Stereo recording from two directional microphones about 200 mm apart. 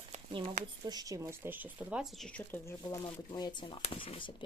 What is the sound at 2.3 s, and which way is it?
Speech, 10° left (ahead or behind).